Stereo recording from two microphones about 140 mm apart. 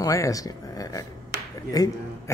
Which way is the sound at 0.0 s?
25° left (ahead or behind).